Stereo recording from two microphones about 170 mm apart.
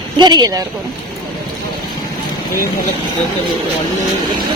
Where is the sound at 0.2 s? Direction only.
25° right (ahead or behind).